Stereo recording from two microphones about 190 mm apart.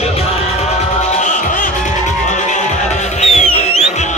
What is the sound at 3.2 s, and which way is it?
Music, 35° left (ahead or behind).